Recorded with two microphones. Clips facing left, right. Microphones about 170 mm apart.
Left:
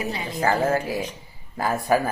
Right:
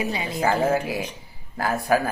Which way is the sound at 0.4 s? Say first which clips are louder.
Even; 15° right (ahead or behind).